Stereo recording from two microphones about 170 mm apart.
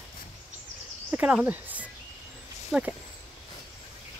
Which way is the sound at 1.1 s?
10° right (ahead or behind).